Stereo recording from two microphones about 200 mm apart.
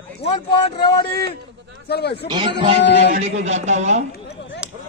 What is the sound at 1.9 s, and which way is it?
Speech, 55° left (ahead or behind).